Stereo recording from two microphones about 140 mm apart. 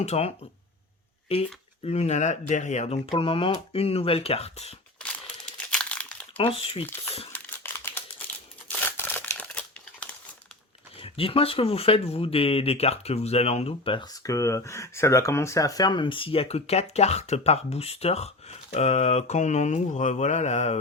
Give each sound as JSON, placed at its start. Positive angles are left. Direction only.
{"t": 0.0, "sound": "speech", "side_deg": 50}
{"t": 1.8, "sound": "speech", "side_deg": 50}
{"t": 4.9, "sound": "crumpling", "side_deg": 10}
{"t": 6.3, "sound": "speech", "side_deg": 45}
{"t": 6.8, "sound": "speech", "side_deg": 15}
{"t": 7.3, "sound": "a sound", "side_deg": 15}
{"t": 8.6, "sound": "crumpling", "side_deg": 15}
{"t": 11.0, "sound": "speech", "side_deg": 40}
{"t": 14.3, "sound": "speech", "side_deg": 20}